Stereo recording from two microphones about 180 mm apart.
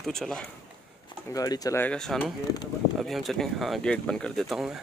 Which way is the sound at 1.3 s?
20° left (ahead or behind).